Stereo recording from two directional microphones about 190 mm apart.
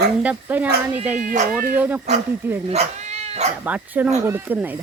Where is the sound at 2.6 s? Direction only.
35° right (ahead or behind).